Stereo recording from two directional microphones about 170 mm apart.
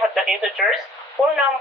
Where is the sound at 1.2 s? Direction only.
20° left (ahead or behind).